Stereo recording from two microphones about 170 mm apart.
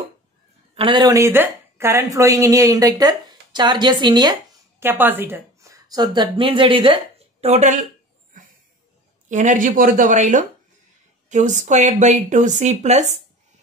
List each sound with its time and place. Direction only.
0.7 s speech: 30° right (ahead or behind)
4.7 s a woman's voice: 10° right (ahead or behind); by 7.8 s 40° right (ahead or behind)
9.3 s speech: 45° right (ahead or behind)